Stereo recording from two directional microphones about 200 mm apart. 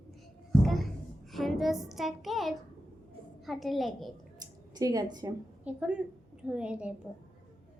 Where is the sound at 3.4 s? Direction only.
Centre (ahead or behind).